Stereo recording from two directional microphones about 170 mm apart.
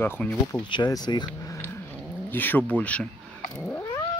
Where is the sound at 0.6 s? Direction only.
25° left (ahead or behind).